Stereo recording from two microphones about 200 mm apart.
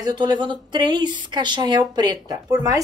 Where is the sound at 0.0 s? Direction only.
20° right (ahead or behind).